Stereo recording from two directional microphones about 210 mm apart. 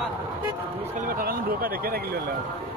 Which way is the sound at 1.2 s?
45° right (ahead or behind).